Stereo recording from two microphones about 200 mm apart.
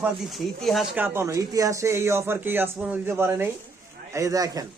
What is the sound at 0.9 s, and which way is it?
Speech, 10° right (ahead or behind).